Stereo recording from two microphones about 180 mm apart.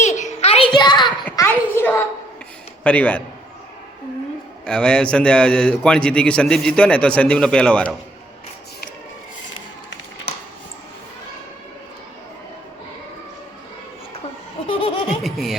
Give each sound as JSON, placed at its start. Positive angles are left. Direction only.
{"t": 0.0, "sound": "a sound", "side_deg": 40}
{"t": 1.2, "sound": "a sound", "side_deg": 15}
{"t": 2.8, "sound": "a man's voice", "side_deg": 5}
{"t": 4.6, "sound": "a man's voice", "side_deg": 5}
{"t": 14.7, "sound": "laughter", "side_deg": 30}
{"t": 15.0, "sound": "music", "side_deg": 0}